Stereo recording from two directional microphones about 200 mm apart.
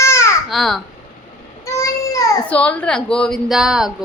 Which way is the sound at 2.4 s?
5° left (ahead or behind).